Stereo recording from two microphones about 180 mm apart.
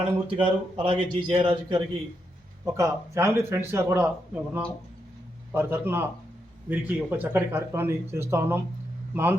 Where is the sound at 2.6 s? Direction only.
15° right (ahead or behind).